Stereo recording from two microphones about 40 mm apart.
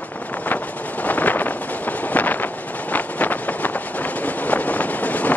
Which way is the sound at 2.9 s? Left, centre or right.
Left.